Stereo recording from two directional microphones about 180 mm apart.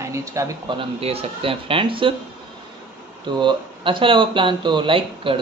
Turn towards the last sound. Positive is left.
turn(degrees=-30)  # may be behind; listen again after turning